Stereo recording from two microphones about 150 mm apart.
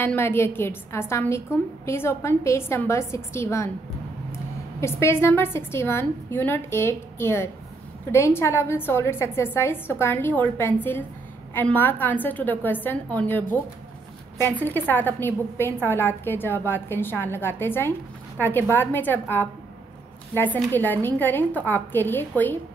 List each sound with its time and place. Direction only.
0.0 s a woman's voice: 15° left (ahead or behind)
4.7 s a woman's voice: 15° left (ahead or behind)